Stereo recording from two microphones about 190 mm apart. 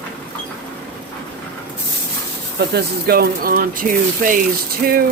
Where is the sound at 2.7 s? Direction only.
55° right (ahead or behind).